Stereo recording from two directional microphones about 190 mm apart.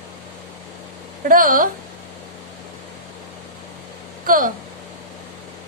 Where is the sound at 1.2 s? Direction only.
45° right (ahead or behind).